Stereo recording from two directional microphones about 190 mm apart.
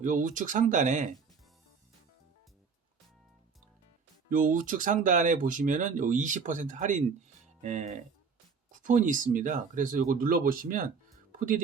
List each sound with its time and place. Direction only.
0.0 s speech: 40° right (ahead or behind)
4.3 s speech: 45° right (ahead or behind)